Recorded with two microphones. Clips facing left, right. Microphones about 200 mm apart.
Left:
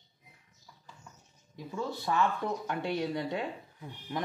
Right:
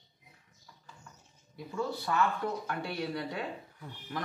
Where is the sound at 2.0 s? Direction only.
20° left (ahead or behind).